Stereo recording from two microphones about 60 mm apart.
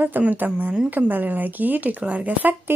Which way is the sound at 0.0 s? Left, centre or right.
Right.